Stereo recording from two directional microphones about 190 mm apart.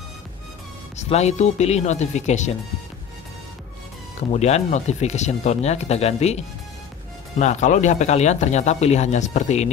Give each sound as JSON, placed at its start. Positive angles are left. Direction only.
{"t": 1.0, "sound": "speech", "side_deg": 35}
{"t": 4.3, "sound": "speech", "side_deg": 35}